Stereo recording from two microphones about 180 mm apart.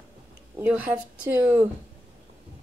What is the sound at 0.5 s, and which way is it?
Speech, 10° right (ahead or behind).